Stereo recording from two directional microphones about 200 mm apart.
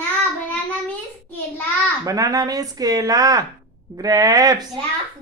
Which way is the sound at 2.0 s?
20° right (ahead or behind).